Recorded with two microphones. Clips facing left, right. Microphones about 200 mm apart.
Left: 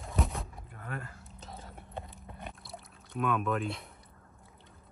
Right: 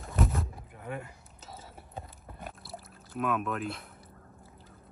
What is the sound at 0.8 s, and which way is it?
Speech, 15° right (ahead or behind).